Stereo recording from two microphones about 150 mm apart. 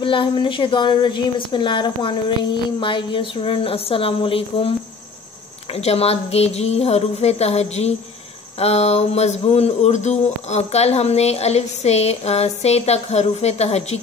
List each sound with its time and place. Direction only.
0.0 s speech: 35° left (ahead or behind)